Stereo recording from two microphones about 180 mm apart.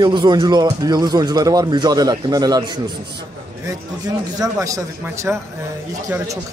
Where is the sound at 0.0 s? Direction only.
25° right (ahead or behind).